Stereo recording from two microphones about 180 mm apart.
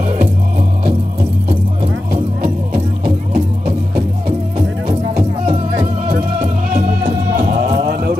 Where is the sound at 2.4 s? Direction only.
60° right (ahead or behind).